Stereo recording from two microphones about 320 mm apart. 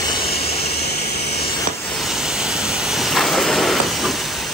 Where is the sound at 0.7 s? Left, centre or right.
Left.